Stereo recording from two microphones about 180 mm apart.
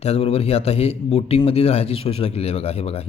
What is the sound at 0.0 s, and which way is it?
A man's voice, 35° left (ahead or behind).